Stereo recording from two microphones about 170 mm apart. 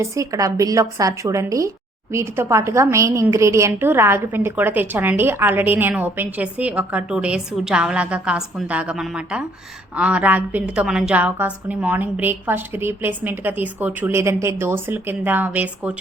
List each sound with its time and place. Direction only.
0.0 s a woman's voice: 20° right (ahead or behind)